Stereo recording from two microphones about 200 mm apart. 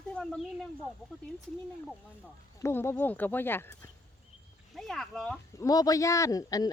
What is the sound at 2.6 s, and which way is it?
Speech, 10° left (ahead or behind).